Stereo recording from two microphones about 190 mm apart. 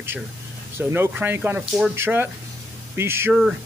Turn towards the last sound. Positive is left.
turn(degrees=-10)  # may be behind; listen again after turning